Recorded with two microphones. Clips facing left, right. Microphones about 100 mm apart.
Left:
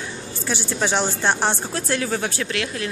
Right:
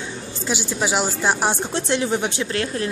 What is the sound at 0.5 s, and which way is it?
Speech, 15° right (ahead or behind).